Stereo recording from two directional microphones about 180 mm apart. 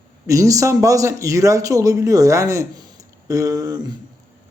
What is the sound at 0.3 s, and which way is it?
A man's voice, 20° right (ahead or behind).